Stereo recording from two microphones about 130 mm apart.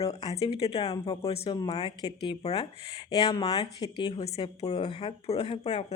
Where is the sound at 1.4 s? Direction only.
30° left (ahead or behind).